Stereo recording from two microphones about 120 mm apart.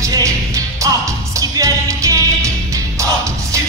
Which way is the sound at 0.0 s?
25° right (ahead or behind).